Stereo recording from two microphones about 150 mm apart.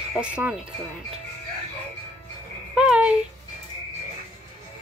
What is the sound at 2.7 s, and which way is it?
Music, 5° right (ahead or behind).